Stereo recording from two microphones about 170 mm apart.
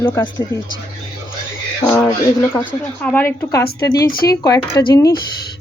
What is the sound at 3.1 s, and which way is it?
Speech, 15° left (ahead or behind).